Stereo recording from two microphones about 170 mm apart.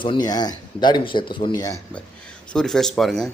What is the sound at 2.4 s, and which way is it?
Speech, 5° left (ahead or behind).